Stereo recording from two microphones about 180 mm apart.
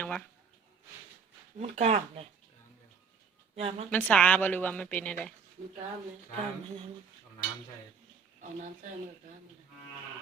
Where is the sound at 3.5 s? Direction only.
35° right (ahead or behind).